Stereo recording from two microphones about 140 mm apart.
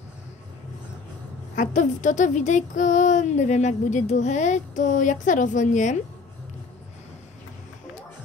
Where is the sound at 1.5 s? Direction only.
65° left (ahead or behind).